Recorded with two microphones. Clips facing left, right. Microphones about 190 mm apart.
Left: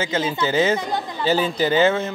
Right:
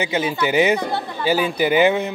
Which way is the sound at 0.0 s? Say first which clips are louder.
Right 1 dB; 15° right (ahead or behind).